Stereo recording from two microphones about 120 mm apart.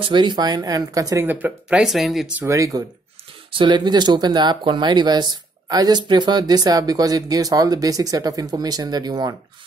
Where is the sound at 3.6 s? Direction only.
40° right (ahead or behind).